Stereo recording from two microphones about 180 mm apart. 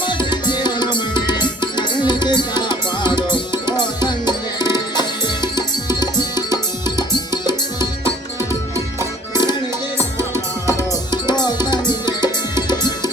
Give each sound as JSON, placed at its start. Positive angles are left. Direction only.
{"t": 0.0, "sound": "music", "side_deg": 25}
{"t": 8.4, "sound": "music", "side_deg": -15}
{"t": 9.3, "sound": "music", "side_deg": 25}
{"t": 10.7, "sound": "music", "side_deg": 20}